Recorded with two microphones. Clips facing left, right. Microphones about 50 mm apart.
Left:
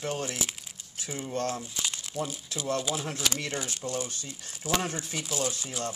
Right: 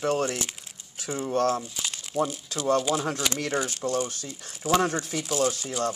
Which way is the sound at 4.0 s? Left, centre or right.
Right.